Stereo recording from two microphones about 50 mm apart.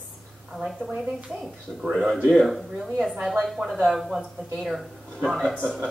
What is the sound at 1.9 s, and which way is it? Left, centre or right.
Speech, centre.